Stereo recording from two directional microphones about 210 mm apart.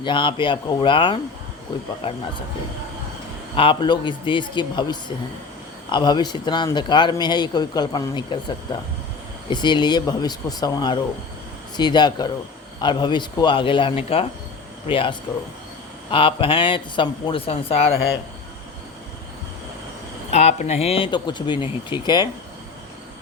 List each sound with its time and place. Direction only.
0.0 s a man's voice: 20° left (ahead or behind)
3.5 s a man's voice: 25° left (ahead or behind)
20.3 s a man's voice: 30° left (ahead or behind)